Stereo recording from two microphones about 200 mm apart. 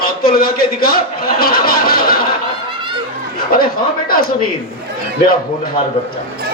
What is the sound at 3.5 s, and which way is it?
Speech, 50° left (ahead or behind).